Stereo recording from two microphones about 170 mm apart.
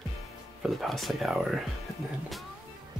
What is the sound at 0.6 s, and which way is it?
Speech, centre (ahead or behind).